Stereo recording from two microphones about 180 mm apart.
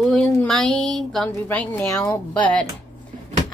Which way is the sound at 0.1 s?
5° left (ahead or behind).